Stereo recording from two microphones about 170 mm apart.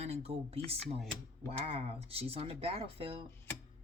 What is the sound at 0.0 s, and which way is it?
Speech, 40° right (ahead or behind).